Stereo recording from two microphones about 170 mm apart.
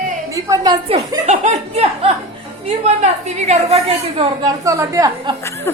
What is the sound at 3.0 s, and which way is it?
A woman's voice, 40° right (ahead or behind).